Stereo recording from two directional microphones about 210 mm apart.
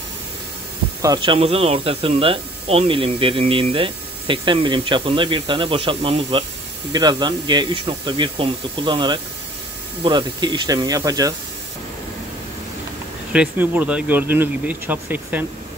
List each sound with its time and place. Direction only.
1.0 s speech: 20° right (ahead or behind)
13.3 s speech: 5° right (ahead or behind)